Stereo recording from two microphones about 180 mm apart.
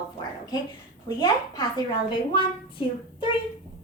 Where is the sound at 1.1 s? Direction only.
20° left (ahead or behind).